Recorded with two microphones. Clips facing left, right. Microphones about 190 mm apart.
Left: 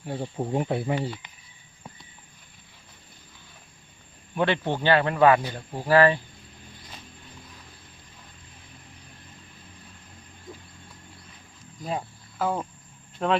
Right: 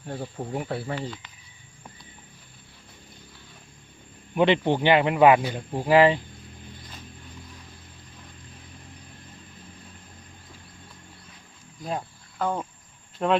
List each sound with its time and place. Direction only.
0.2 s speech: 20° left (ahead or behind)
4.4 s speech: 15° right (ahead or behind)
11.8 s cricket: 5° left (ahead or behind)
13.1 s speech: centre (ahead or behind)